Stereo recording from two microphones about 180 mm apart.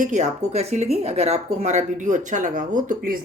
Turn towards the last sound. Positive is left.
turn(degrees=-50)  # may be behind; listen again after turning